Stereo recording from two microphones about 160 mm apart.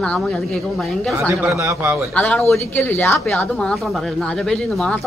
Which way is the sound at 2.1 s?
10° left (ahead or behind).